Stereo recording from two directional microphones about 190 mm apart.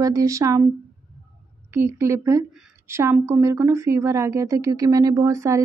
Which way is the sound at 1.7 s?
15° right (ahead or behind).